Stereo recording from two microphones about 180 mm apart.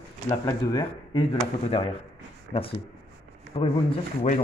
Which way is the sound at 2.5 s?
65° right (ahead or behind).